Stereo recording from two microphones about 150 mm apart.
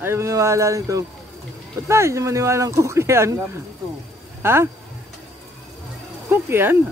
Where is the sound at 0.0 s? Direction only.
20° right (ahead or behind).